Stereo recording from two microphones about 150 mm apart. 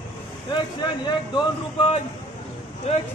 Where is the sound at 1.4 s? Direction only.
40° left (ahead or behind).